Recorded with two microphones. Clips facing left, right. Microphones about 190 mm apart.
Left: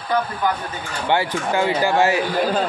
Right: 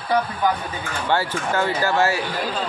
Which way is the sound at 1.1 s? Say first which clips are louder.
Left 2 dB; 15° left (ahead or behind).